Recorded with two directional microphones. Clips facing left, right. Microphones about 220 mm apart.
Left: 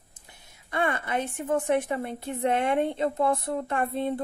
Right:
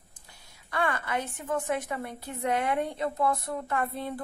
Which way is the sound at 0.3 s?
20° left (ahead or behind).